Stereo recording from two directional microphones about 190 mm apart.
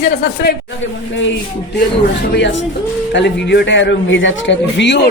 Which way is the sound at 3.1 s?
65° left (ahead or behind).